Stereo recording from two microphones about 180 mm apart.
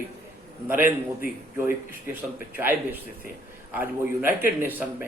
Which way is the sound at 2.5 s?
10° right (ahead or behind).